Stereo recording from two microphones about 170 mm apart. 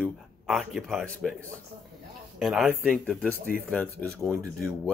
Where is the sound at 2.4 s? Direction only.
Centre (ahead or behind).